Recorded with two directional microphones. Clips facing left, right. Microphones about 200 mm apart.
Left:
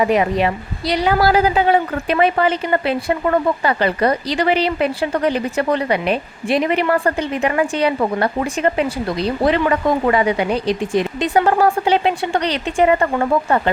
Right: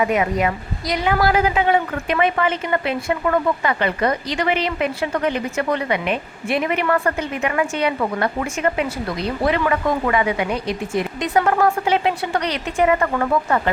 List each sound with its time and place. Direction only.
0.0 s a woman's voice: 35° left (ahead or behind)